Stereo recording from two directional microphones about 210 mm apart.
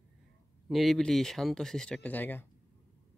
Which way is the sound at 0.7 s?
Centre (ahead or behind).